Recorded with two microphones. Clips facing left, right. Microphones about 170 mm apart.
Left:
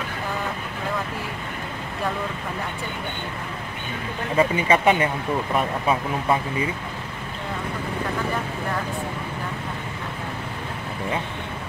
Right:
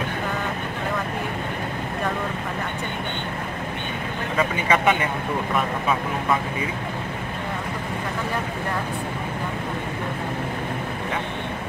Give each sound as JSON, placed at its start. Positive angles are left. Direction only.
{"t": 4.4, "sound": "speech", "side_deg": 30}